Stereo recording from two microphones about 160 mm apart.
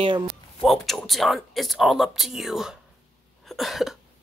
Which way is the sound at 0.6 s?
Centre (ahead or behind).